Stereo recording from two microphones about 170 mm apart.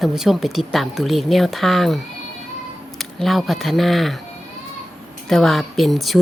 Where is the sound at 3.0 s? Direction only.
Centre (ahead or behind).